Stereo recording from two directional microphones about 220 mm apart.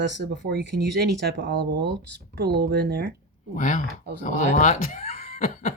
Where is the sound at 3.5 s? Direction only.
35° left (ahead or behind).